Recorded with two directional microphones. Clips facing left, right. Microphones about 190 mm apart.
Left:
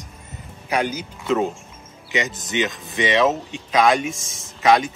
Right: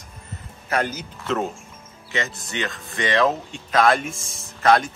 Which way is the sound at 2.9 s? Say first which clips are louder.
Left 2 dB; 5° left (ahead or behind).